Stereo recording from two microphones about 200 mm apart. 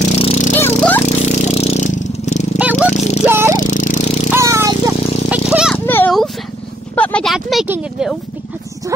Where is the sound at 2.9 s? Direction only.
35° left (ahead or behind).